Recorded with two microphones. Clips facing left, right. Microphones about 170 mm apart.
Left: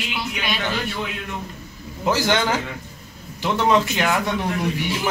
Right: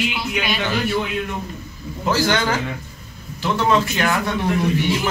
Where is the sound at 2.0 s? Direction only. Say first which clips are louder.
Right 1 dB; 20° left (ahead or behind).